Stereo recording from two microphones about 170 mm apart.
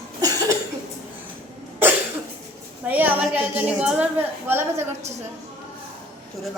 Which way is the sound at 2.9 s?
10° right (ahead or behind).